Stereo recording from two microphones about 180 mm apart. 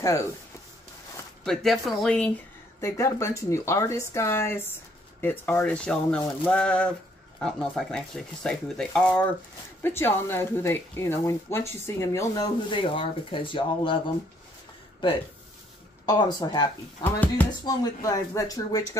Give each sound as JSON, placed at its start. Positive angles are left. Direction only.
{"t": 0.0, "sound": "speech", "side_deg": 15}
{"t": 1.4, "sound": "speech", "side_deg": 0}
{"t": 16.1, "sound": "speech", "side_deg": 20}
{"t": 17.6, "sound": "speech", "side_deg": 20}